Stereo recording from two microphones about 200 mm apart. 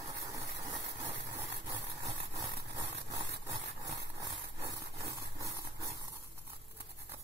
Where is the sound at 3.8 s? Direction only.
20° right (ahead or behind).